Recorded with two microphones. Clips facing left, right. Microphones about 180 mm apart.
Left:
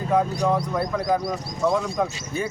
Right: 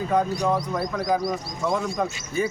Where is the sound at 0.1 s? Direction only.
Centre (ahead or behind).